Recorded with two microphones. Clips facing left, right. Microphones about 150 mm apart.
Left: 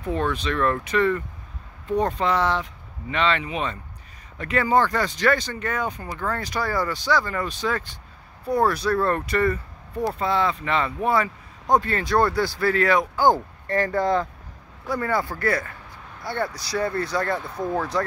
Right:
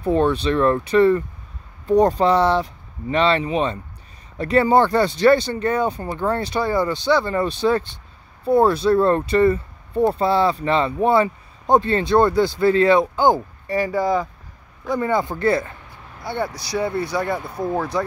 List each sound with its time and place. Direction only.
0.0 s speech: 30° right (ahead or behind); by 14.2 s 10° right (ahead or behind)
14.9 s speech: 20° right (ahead or behind)
16.3 s speech: 15° right (ahead or behind)